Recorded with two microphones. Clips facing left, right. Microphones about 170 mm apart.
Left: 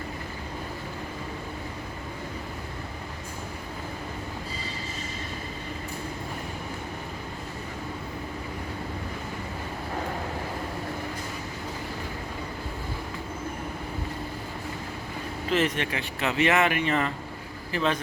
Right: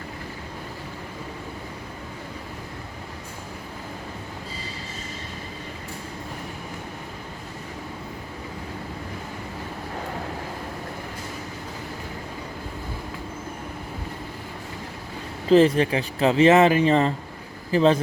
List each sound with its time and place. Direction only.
15.4 s speech: 35° right (ahead or behind)